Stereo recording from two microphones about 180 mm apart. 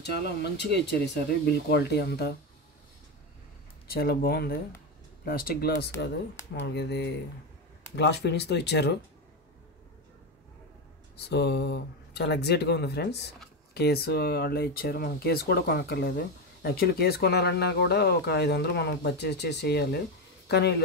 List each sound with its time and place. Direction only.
0.0 s speech: 65° left (ahead or behind)
3.9 s speech: 60° left (ahead or behind)
6.5 s speech: 70° left (ahead or behind)
11.2 s speech: 70° left (ahead or behind)